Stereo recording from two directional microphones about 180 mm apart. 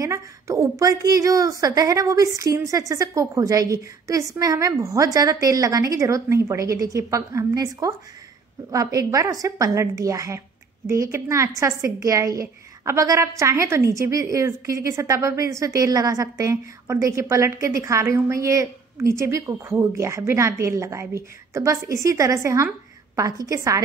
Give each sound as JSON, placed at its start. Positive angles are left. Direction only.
{"t": 0.0, "sound": "a woman's voice", "side_deg": -15}